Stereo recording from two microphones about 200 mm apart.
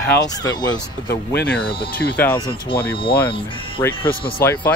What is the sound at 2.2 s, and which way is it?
Speech, 10° left (ahead or behind).